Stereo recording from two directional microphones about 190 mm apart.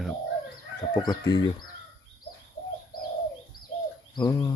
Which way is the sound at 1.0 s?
20° left (ahead or behind).